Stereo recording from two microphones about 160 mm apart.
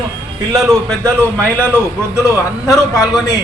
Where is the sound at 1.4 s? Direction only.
10° left (ahead or behind).